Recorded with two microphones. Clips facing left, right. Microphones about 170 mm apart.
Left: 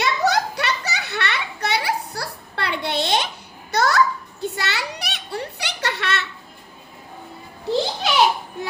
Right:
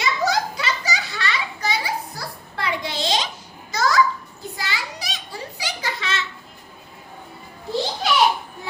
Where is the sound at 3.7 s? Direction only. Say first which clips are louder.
Left 1 dB; 65° left (ahead or behind).